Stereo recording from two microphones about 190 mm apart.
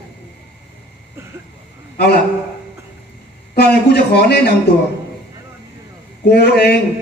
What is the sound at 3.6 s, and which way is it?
Speech, 60° left (ahead or behind).